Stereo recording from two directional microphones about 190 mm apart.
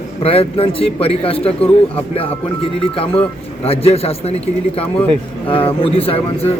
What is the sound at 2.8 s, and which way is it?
Speech, 30° left (ahead or behind).